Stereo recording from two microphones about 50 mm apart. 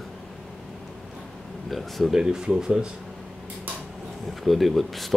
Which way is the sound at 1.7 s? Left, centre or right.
Centre.